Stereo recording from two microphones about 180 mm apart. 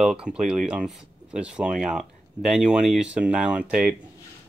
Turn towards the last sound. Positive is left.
turn(degrees=-5)  # may be behind; listen again after turning